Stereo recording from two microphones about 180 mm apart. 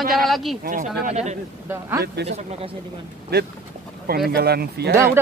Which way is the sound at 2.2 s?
35° right (ahead or behind).